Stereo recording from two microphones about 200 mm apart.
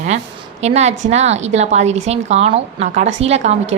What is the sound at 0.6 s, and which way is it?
A woman's voice, 35° right (ahead or behind).